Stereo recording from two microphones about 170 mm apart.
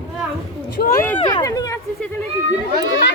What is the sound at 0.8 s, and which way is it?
Speech, 65° left (ahead or behind).